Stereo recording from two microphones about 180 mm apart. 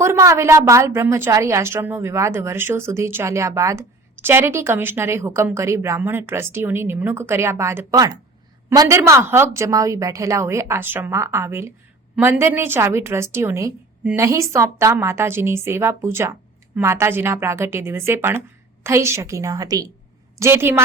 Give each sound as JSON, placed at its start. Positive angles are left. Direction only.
{"t": 0.0, "sound": "a woman's voice", "side_deg": -15}